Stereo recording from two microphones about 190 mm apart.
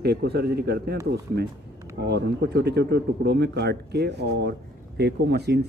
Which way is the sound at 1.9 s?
60° right (ahead or behind).